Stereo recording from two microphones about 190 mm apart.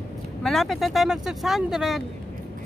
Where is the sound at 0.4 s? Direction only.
Centre (ahead or behind).